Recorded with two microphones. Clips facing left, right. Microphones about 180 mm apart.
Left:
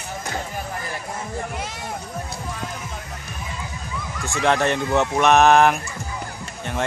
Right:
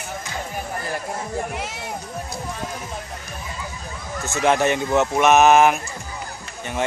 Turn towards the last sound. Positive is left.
turn(degrees=-5)  # may be behind; listen again after turning